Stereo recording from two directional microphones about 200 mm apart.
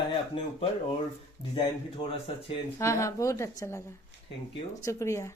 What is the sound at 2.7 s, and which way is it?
A woman's voice, 15° left (ahead or behind).